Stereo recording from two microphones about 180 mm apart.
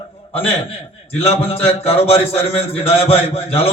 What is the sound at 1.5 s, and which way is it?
A man's voice, 35° left (ahead or behind).